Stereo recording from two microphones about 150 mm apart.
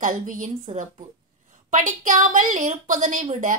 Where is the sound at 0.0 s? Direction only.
60° right (ahead or behind).